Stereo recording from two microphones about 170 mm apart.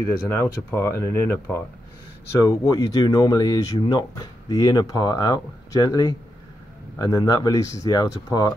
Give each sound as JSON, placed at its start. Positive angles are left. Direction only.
{"t": 0.0, "sound": "speech", "side_deg": 15}